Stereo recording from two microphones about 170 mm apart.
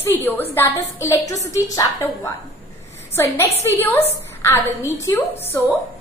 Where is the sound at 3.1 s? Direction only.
15° left (ahead or behind).